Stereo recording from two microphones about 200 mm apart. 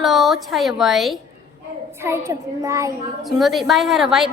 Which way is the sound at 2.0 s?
15° right (ahead or behind).